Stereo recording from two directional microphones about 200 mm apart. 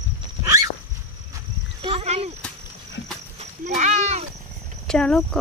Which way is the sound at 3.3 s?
35° right (ahead or behind).